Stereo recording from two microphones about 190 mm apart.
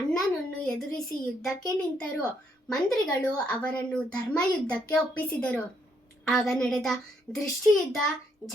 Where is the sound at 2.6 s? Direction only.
5° left (ahead or behind).